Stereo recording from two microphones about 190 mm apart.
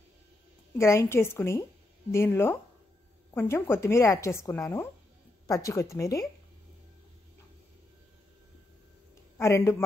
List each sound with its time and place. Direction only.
0.7 s a woman's voice: 15° left (ahead or behind)
9.4 s a woman's voice: 15° left (ahead or behind)